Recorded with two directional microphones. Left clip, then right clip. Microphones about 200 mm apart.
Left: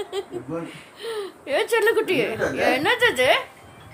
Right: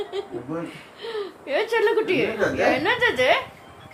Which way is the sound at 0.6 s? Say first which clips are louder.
Left 1 dB; 20° left (ahead or behind).